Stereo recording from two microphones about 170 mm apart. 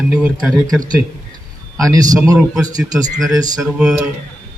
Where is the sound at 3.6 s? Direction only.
5° right (ahead or behind).